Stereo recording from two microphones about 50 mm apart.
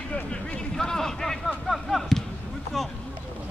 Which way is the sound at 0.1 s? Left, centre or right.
Left.